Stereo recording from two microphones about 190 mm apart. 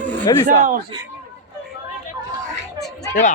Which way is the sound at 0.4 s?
45° right (ahead or behind).